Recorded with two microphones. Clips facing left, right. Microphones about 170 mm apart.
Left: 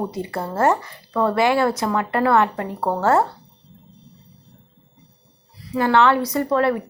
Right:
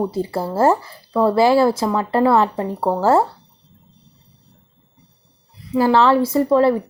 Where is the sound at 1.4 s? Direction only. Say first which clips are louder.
Right 5 dB; 30° right (ahead or behind).